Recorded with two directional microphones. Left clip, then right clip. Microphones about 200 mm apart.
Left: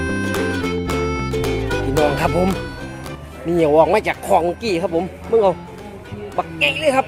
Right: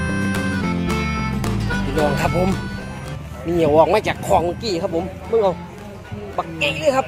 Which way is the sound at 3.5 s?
15° left (ahead or behind).